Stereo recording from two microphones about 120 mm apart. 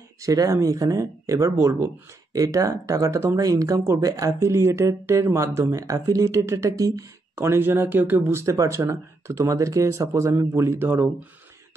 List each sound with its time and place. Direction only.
0.2 s speech: 30° right (ahead or behind)